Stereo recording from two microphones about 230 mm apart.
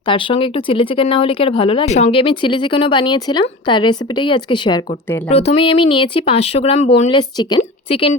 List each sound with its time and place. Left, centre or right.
0.0 s speech: left